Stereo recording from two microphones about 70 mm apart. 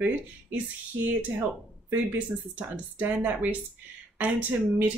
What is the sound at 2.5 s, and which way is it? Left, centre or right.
Speech, right.